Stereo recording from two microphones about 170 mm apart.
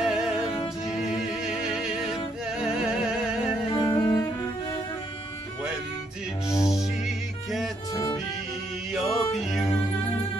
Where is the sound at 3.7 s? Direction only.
25° left (ahead or behind).